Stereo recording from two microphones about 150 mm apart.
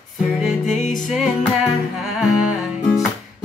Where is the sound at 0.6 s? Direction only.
55° left (ahead or behind).